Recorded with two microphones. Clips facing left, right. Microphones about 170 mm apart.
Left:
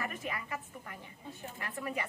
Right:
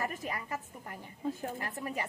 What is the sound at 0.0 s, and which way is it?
A woman's voice, 35° right (ahead or behind).